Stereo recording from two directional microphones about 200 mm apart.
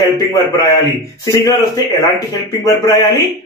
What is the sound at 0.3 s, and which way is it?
A man's voice, 15° left (ahead or behind).